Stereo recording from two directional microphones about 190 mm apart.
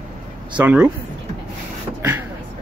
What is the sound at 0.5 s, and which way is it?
Speech, 5° right (ahead or behind).